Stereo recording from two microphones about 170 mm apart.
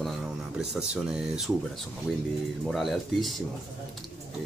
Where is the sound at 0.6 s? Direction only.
5° right (ahead or behind).